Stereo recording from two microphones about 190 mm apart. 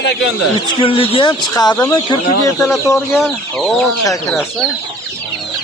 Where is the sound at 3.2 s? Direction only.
Centre (ahead or behind).